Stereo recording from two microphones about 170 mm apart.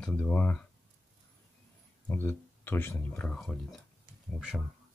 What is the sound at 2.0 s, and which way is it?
Speech, 10° left (ahead or behind).